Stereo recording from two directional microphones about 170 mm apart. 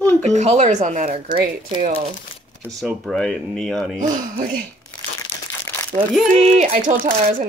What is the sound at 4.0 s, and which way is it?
Speech, 55° right (ahead or behind).